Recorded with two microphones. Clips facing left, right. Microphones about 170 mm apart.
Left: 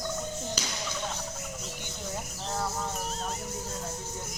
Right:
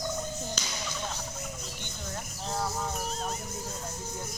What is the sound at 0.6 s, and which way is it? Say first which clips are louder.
Music: left 3 dB; 10° left (ahead or behind).